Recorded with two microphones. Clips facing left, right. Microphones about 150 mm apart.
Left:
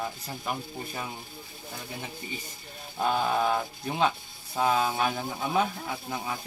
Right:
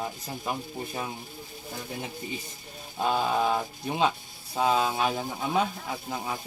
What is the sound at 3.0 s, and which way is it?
Speech, 10° right (ahead or behind).